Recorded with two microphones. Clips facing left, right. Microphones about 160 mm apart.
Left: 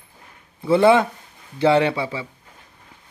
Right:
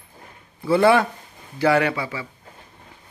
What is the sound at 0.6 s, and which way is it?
A man's voice, 20° left (ahead or behind).